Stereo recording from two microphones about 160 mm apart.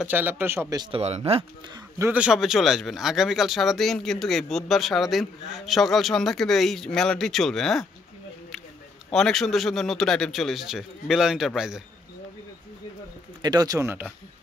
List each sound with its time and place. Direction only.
0.0 s a man's voice: 10° right (ahead or behind)
0.9 s speech: 40° right (ahead or behind)
2.0 s speech: 10° right (ahead or behind)
9.1 s speech: centre (ahead or behind)
13.4 s speech: 25° right (ahead or behind)